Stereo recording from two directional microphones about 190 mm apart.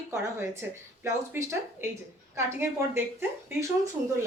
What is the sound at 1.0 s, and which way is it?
Speech, 15° right (ahead or behind).